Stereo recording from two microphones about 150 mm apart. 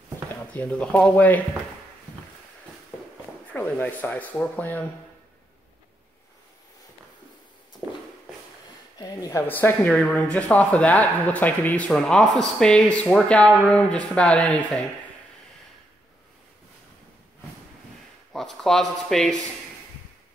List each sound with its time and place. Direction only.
0.6 s speech: 10° left (ahead or behind)
3.5 s speech: 10° left (ahead or behind)
8.9 s a sound: 25° left (ahead or behind)
9.5 s speech: 10° left (ahead or behind)
18.3 s speech: 5° left (ahead or behind)